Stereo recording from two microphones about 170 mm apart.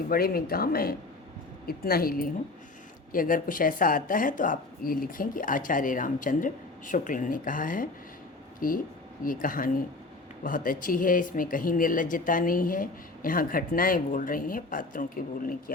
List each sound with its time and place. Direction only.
0.1 s speech: 60° left (ahead or behind)